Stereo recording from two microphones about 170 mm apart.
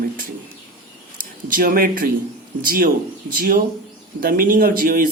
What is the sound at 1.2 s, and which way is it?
Speech, 55° right (ahead or behind).